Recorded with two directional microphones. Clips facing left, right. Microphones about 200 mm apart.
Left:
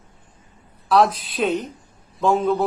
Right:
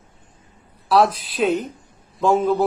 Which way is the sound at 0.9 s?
Centre (ahead or behind).